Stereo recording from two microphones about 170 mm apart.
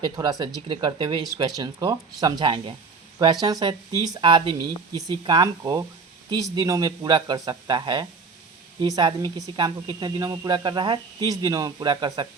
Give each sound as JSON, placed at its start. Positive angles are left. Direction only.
{"t": 0.0, "sound": "speech", "side_deg": -20}